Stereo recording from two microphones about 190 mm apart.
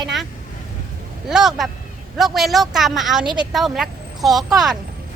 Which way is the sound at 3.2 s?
25° right (ahead or behind).